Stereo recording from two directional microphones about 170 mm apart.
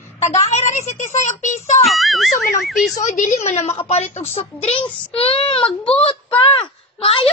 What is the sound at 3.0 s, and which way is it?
A woman's voice, 50° left (ahead or behind).